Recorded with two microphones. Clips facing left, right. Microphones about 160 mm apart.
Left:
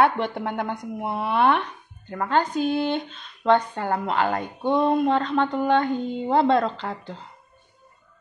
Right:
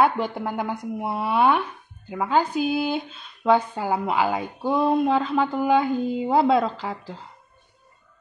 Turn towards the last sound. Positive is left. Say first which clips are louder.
# even
turn(degrees=-5)  # may be behind; listen again after turning